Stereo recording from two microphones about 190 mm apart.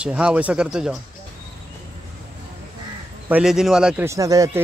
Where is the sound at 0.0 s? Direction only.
5° right (ahead or behind).